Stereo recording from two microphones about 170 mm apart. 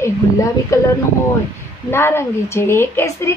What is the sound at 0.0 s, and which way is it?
Speech, 15° left (ahead or behind).